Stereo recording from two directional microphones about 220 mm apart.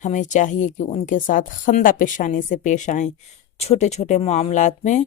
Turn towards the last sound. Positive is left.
turn(degrees=35)  # may be behind; listen again after turning